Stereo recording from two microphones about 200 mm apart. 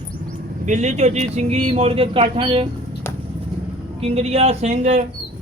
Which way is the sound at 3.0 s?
15° left (ahead or behind).